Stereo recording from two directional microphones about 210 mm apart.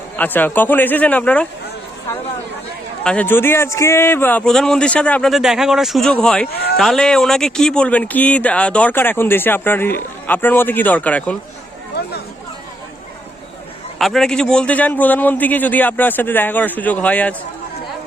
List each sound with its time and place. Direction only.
0.2 s speech: 10° left (ahead or behind)
3.0 s a man's voice: 5° left (ahead or behind)
11.9 s speech: 50° left (ahead or behind)
14.0 s speech: centre (ahead or behind)